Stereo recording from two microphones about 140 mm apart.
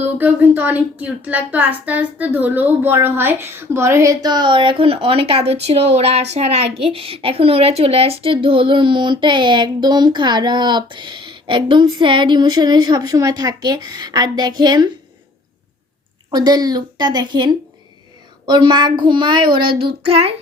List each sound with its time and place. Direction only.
0.0 s speech: 10° right (ahead or behind); by 14.8 s 30° right (ahead or behind)
16.3 s a woman's voice: 30° right (ahead or behind)
20.0 s child singing: 45° right (ahead or behind)